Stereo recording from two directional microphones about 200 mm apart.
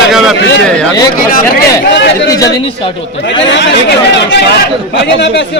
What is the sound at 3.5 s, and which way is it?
Speech, 60° left (ahead or behind).